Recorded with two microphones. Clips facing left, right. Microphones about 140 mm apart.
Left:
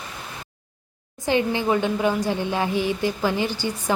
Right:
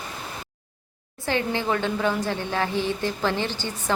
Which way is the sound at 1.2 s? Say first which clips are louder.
Left 4 dB; 15° left (ahead or behind).